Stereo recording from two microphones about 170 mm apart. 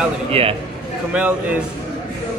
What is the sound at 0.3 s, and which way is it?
Speech, 35° right (ahead or behind).